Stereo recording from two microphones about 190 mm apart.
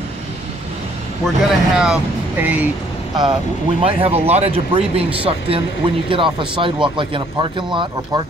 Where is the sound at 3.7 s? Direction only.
30° right (ahead or behind).